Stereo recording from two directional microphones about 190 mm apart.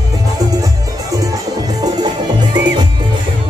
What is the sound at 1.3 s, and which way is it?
Music, 20° right (ahead or behind).